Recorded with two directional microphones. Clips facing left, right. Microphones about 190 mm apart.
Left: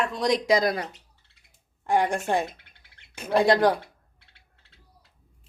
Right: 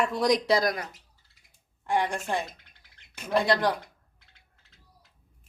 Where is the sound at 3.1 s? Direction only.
45° left (ahead or behind).